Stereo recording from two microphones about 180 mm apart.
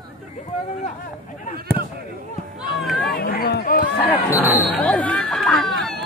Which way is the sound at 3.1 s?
55° left (ahead or behind).